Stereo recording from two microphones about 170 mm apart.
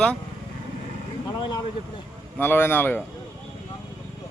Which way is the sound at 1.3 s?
25° left (ahead or behind).